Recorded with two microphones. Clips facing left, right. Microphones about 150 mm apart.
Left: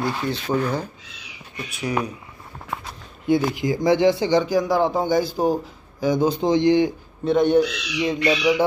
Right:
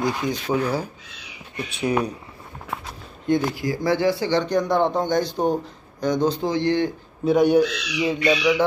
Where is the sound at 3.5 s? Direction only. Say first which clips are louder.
Left 3 dB; 20° left (ahead or behind).